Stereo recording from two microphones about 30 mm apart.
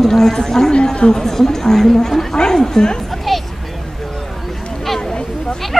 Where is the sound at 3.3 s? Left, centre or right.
Centre.